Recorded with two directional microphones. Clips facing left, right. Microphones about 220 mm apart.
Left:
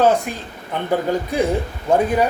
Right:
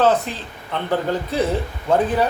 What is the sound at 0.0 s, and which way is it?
Speech, 10° left (ahead or behind).